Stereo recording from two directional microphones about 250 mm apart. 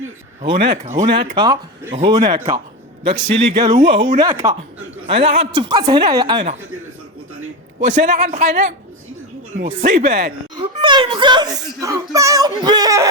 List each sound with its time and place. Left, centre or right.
0.4 s a child's voice: centre
7.8 s speech: right
10.6 s a child's voice: centre